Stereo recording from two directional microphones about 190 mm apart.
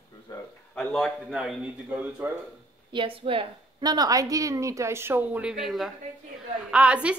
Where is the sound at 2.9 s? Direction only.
25° right (ahead or behind).